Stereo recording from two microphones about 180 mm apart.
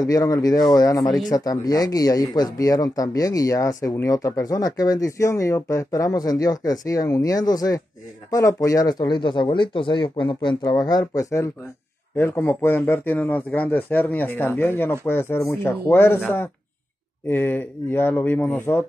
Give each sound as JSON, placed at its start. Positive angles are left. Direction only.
{"t": 0.0, "sound": "a man's voice", "side_deg": 20}
{"t": 17.3, "sound": "a man's voice", "side_deg": 10}